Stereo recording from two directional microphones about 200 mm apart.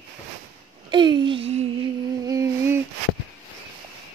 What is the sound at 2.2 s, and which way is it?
Humming, 15° right (ahead or behind).